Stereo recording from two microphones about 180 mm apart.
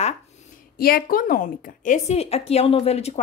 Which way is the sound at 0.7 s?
55° left (ahead or behind).